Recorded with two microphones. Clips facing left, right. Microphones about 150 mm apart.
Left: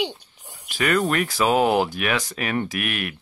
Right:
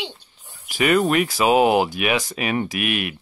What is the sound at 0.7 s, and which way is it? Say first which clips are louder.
Speech: right 3 dB; 15° right (ahead or behind).